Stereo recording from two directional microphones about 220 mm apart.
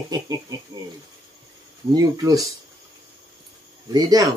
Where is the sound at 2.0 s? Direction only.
15° right (ahead or behind).